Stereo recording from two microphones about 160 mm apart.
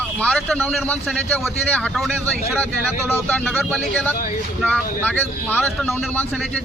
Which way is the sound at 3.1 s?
10° left (ahead or behind).